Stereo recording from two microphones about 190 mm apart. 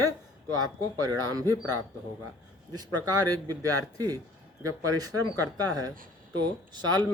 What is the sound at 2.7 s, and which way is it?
Speech, 20° right (ahead or behind).